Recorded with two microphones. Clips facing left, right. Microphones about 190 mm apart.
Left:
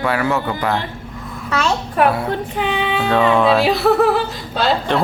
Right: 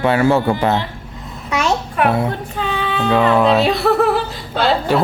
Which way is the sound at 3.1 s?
5° right (ahead or behind).